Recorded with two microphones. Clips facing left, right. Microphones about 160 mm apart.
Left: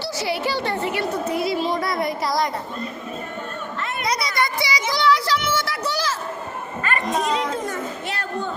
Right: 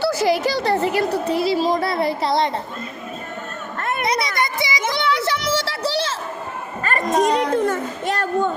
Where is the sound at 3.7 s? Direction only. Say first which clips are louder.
Right 7 dB; 50° right (ahead or behind).